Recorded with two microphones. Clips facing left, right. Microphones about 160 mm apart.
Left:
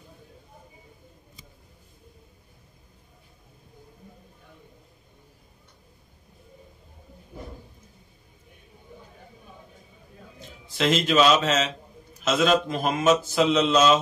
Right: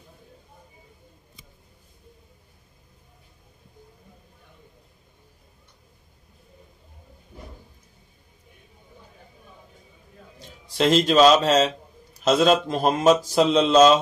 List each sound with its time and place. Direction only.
10.8 s speech: 40° right (ahead or behind)